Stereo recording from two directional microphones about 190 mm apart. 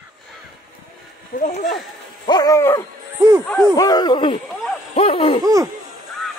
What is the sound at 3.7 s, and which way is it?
Speech, 20° left (ahead or behind).